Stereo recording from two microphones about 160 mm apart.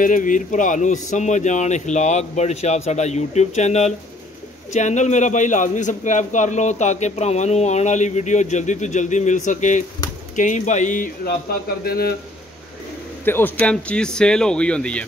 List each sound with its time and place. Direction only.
0.0 s a man's voice: 55° left (ahead or behind)
11.8 s speech: 70° left (ahead or behind)
13.2 s speech: 10° left (ahead or behind)